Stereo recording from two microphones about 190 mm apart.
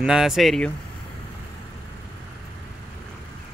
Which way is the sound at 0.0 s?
5° right (ahead or behind).